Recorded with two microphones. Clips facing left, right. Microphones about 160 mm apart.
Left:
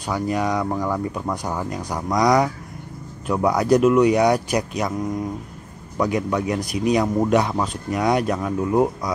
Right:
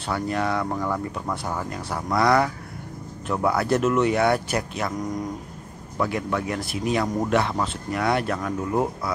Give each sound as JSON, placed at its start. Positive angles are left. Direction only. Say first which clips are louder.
{"t": 0.0, "sound": "speech", "louder": "left 3 dB", "side_deg": 15}
{"t": 5.9, "sound": "speech", "louder": "left 4 dB", "side_deg": 20}